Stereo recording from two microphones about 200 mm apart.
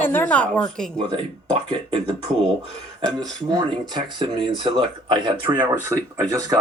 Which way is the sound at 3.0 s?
20° right (ahead or behind).